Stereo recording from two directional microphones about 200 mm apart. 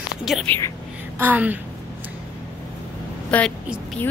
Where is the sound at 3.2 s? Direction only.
5° left (ahead or behind).